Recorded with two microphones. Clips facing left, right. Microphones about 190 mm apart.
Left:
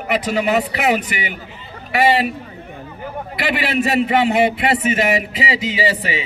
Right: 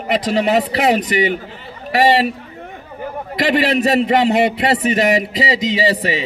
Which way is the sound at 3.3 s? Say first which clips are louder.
Right 5 dB; 40° right (ahead or behind).